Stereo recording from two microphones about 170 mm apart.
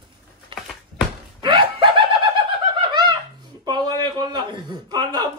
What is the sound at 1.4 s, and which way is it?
Snicker, 30° right (ahead or behind).